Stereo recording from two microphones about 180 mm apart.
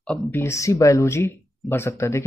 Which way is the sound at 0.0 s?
10° left (ahead or behind).